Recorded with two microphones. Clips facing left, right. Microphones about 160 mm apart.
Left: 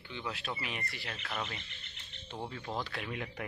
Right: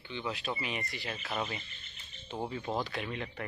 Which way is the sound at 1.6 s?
75° left (ahead or behind).